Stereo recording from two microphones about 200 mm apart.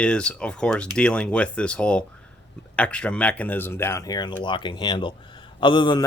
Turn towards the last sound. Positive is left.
turn(degrees=25)  # may be behind; listen again after turning